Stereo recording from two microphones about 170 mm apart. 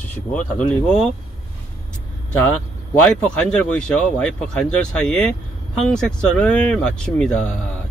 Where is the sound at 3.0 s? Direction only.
10° left (ahead or behind).